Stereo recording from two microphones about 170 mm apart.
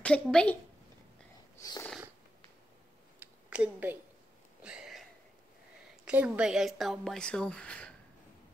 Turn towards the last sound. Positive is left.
turn(degrees=5)  # may be behind; listen again after turning